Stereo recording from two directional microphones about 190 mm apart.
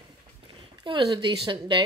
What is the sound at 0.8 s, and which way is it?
Speech, 25° right (ahead or behind).